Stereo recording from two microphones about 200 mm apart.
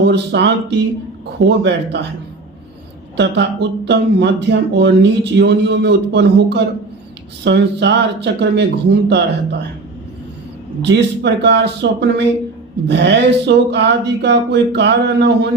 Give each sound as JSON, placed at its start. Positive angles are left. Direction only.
{"t": 0.0, "sound": "speech", "side_deg": -60}
{"t": 3.2, "sound": "speech", "side_deg": -60}
{"t": 10.8, "sound": "speech", "side_deg": -60}